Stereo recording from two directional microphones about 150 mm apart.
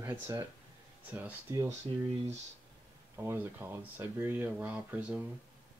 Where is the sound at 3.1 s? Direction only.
15° right (ahead or behind).